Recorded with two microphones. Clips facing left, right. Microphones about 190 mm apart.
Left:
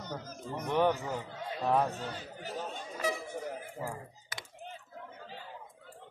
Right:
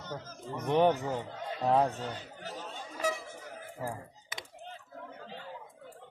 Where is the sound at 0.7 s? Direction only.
20° right (ahead or behind).